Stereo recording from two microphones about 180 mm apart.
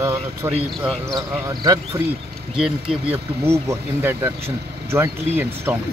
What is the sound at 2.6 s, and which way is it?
Speech, 5° right (ahead or behind).